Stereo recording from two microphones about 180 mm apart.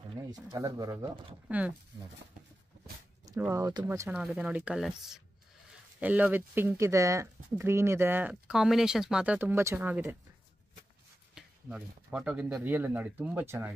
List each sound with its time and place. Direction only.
0.2 s speech: 20° right (ahead or behind)
1.5 s speech: 10° right (ahead or behind)
3.3 s speech: 15° right (ahead or behind)
4.2 s speech: 5° right (ahead or behind)
11.3 s speech: 5° right (ahead or behind)